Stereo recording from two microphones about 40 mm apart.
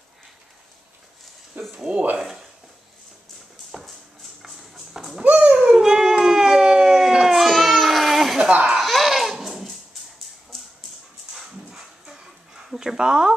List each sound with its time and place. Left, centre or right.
1.6 s speech: right
4.4 s a sound: centre
5.2 s a sound: right
5.5 s a sound: right
5.8 s dog: centre
7.2 s baby cry: centre
8.5 s laughter: right
8.7 s laughter: centre
11.3 s dog: centre